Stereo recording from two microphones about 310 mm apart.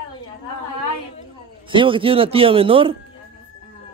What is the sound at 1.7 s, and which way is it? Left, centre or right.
Speech, centre.